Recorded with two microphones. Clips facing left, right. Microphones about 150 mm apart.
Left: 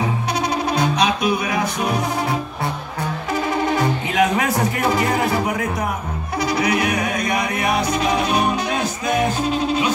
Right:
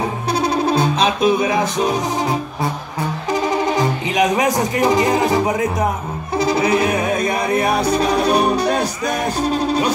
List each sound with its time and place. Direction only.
0.3 s music: 30° right (ahead or behind)
3.4 s speech: 20° right (ahead or behind)
6.3 s music: 25° right (ahead or behind)